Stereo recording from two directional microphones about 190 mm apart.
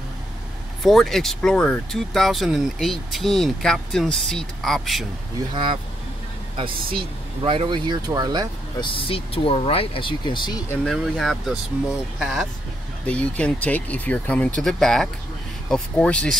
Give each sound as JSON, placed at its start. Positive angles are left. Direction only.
{"t": 0.8, "sound": "speech", "side_deg": 0}
{"t": 5.5, "sound": "speech", "side_deg": -25}
{"t": 7.0, "sound": "speech", "side_deg": -25}
{"t": 8.7, "sound": "speech", "side_deg": 25}
{"t": 10.7, "sound": "speech", "side_deg": 0}